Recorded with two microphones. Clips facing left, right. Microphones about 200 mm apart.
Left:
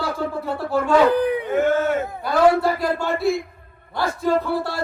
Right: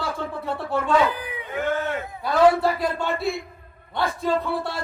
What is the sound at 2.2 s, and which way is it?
A man's voice, centre (ahead or behind).